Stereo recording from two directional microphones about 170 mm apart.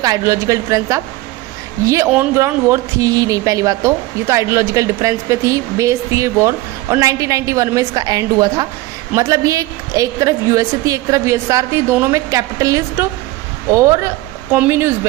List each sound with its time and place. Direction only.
0.0 s speech: 20° right (ahead or behind)
2.0 s speech: 10° right (ahead or behind)